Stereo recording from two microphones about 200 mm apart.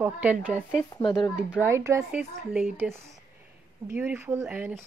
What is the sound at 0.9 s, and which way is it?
Speech, 20° left (ahead or behind).